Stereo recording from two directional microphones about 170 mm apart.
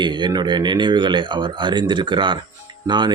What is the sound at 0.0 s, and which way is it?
Speech, 25° right (ahead or behind).